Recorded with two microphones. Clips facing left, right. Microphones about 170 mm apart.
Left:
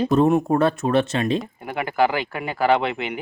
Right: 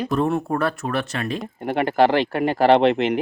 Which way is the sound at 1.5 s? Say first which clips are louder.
Right 4 dB; 35° right (ahead or behind).